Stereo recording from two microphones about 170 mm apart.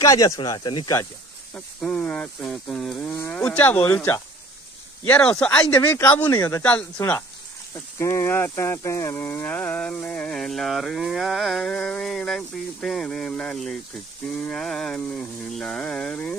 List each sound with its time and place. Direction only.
0.0 s speech: 20° left (ahead or behind)
1.5 s speech: 5° left (ahead or behind)
6.6 s speech: 10° left (ahead or behind)